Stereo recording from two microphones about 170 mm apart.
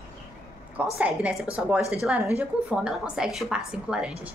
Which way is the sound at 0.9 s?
5° right (ahead or behind).